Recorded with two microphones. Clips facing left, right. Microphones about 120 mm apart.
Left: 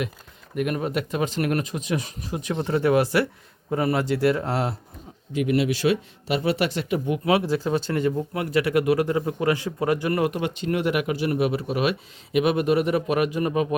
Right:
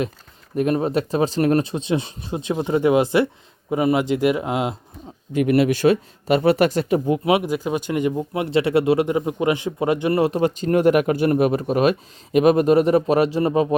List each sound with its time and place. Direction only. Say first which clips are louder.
0.5 s speech: right 5 dB; 30° right (ahead or behind)
5.3 s speech: right 5 dB; 50° right (ahead or behind)
7.3 s speech: left 1 dB; 20° right (ahead or behind)